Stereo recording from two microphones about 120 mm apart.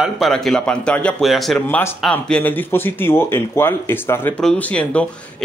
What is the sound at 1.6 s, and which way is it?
Speech, 20° left (ahead or behind).